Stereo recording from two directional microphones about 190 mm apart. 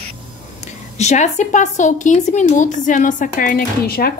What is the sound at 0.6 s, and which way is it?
A woman's voice, 35° left (ahead or behind).